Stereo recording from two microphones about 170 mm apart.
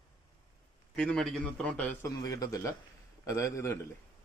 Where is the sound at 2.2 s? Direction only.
20° left (ahead or behind).